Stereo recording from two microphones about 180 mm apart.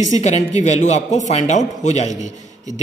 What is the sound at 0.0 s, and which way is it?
A man's voice, 40° left (ahead or behind).